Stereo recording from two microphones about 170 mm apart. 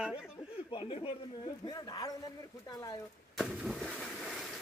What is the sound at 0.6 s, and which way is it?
A man's voice, 30° left (ahead or behind).